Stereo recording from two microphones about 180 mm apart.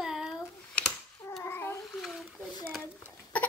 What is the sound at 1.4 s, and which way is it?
Babbling, 10° left (ahead or behind).